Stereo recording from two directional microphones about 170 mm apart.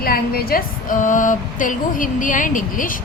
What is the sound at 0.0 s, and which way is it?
A woman's voice, 60° left (ahead or behind).